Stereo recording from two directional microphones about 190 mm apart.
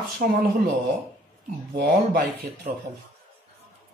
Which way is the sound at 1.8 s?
55° right (ahead or behind).